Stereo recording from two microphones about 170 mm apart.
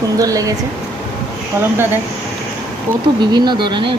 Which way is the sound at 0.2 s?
20° right (ahead or behind).